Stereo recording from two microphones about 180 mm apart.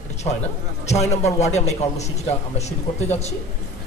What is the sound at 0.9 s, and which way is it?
A man's voice, 40° left (ahead or behind).